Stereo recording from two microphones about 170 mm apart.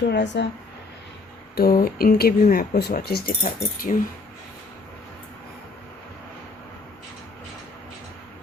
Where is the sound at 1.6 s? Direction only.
60° left (ahead or behind).